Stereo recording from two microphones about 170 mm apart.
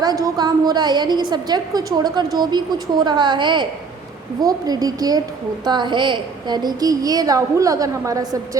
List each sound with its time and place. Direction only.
0.0 s a woman's voice: 25° right (ahead or behind)